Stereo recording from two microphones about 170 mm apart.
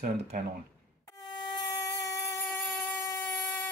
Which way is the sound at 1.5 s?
20° left (ahead or behind).